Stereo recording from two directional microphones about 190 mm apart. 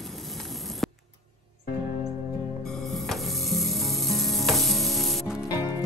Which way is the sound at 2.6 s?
Centre (ahead or behind).